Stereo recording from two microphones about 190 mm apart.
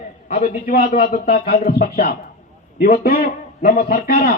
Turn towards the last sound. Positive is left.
turn(degrees=50)  # may be behind; listen again after turning